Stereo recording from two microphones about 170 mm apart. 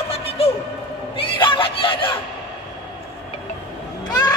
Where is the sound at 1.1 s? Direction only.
30° left (ahead or behind).